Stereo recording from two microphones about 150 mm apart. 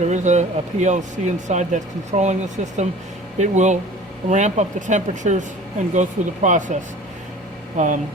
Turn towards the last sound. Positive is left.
turn(degrees=-55)  # may be behind; listen again after turning